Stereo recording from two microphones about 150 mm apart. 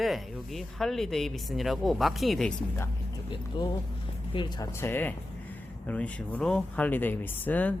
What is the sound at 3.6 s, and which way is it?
Speech, 30° left (ahead or behind).